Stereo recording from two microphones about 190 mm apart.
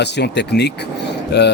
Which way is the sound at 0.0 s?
65° left (ahead or behind).